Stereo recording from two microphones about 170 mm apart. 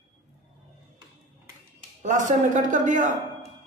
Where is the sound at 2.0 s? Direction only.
45° right (ahead or behind).